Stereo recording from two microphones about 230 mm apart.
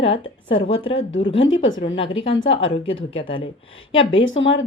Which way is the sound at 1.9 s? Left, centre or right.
Left.